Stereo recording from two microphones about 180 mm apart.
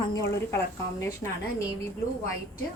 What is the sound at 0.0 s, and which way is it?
Speech, 20° left (ahead or behind).